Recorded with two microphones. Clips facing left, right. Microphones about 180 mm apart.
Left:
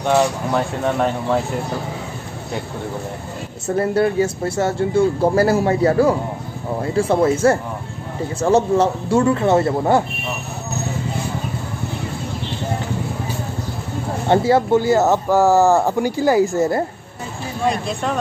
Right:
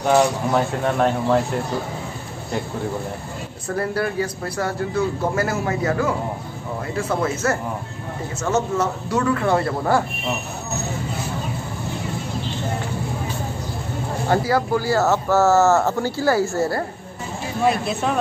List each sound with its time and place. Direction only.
0.0 s speech: centre (ahead or behind)
3.6 s speech: 25° left (ahead or behind)
14.3 s speech: 25° left (ahead or behind)
17.6 s speech: 5° right (ahead or behind)